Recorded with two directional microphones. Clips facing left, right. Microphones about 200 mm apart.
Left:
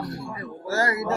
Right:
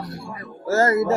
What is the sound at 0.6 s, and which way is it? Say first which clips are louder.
Speech: right 7 dB; 45° right (ahead or behind).